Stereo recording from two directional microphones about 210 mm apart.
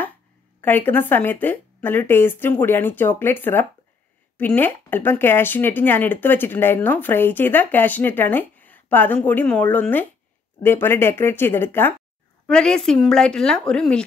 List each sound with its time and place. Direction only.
0.6 s a woman's voice: 10° left (ahead or behind)